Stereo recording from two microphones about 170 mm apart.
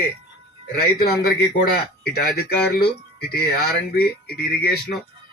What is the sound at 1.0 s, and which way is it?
Speech, 70° left (ahead or behind).